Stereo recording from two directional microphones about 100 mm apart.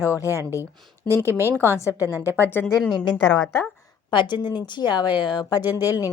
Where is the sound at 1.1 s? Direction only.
25° right (ahead or behind).